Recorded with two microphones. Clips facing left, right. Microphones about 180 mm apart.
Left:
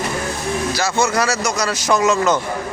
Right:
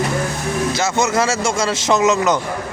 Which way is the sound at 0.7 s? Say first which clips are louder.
Even; 20° right (ahead or behind).